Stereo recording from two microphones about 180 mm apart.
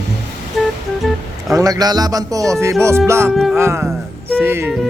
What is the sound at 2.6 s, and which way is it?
Music, 15° right (ahead or behind).